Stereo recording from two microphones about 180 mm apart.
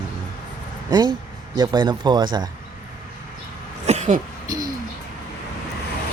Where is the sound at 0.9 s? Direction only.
25° right (ahead or behind).